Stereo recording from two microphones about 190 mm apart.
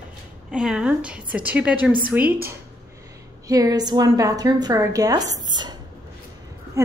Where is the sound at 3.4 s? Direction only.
20° right (ahead or behind).